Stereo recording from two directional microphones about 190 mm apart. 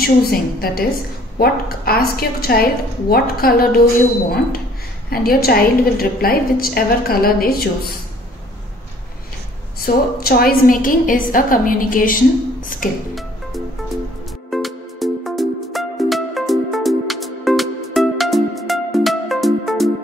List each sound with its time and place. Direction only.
0.0 s a woman's voice: 50° left (ahead or behind)
5.1 s a woman's voice: 50° left (ahead or behind)
9.8 s a woman's voice: 50° left (ahead or behind)
14.5 s music: centre (ahead or behind)